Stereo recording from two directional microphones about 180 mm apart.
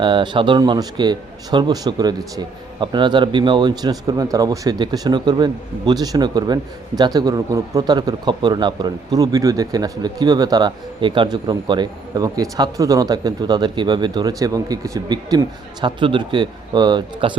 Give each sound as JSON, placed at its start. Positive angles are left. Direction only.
{"t": 0.0, "sound": "a man's voice", "side_deg": -25}